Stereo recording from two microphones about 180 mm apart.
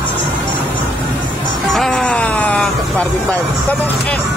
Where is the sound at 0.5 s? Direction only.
10° left (ahead or behind).